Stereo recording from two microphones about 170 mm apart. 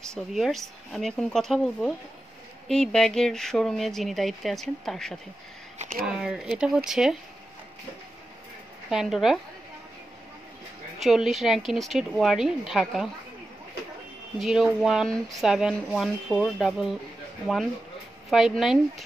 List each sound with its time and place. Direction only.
0.0 s speech: centre (ahead or behind)
5.8 s speech: 55° right (ahead or behind)
6.0 s speech: centre (ahead or behind)
8.9 s speech: centre (ahead or behind)
11.0 s speech: centre (ahead or behind)
14.4 s speech: centre (ahead or behind)
18.3 s speech: centre (ahead or behind)